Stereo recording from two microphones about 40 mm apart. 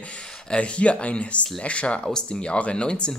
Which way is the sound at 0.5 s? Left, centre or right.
Left.